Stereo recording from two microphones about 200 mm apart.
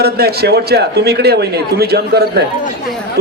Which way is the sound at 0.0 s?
55° right (ahead or behind).